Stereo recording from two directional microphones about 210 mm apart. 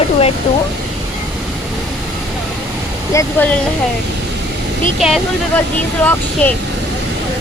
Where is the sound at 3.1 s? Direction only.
10° left (ahead or behind).